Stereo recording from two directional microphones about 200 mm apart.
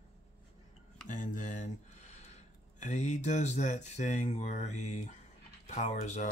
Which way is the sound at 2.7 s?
35° left (ahead or behind).